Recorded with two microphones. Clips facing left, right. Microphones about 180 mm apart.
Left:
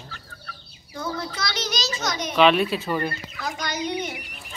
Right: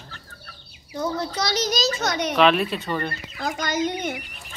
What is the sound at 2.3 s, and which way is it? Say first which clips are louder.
Speech: left 2 dB; centre (ahead or behind).